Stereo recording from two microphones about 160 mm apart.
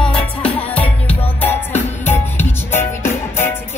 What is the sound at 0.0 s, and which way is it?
Music, 5° left (ahead or behind).